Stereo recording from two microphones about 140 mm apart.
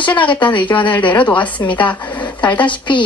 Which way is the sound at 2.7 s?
35° left (ahead or behind).